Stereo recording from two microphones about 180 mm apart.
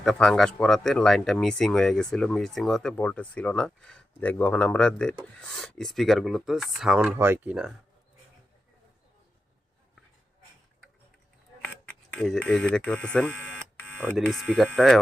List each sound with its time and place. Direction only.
0.0 s speech: 5° left (ahead or behind)
11.6 s a sound: 10° left (ahead or behind)
14.2 s speech: centre (ahead or behind)